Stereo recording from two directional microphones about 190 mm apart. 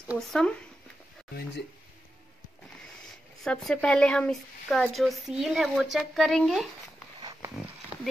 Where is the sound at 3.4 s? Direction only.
Centre (ahead or behind).